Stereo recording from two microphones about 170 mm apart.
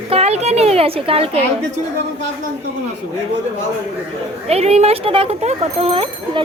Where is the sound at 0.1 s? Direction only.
40° right (ahead or behind).